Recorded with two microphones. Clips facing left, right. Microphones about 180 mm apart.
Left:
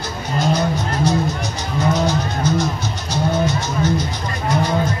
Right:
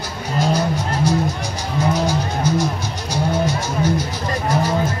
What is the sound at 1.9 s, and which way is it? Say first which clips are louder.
Music: left 1 dB; 10° right (ahead or behind).